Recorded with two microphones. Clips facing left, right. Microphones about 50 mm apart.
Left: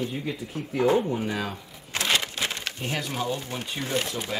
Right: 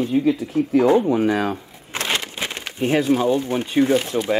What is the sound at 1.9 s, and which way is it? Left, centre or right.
Typewriter, right.